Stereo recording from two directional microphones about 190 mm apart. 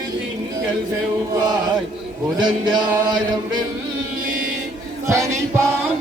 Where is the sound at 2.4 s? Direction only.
25° right (ahead or behind).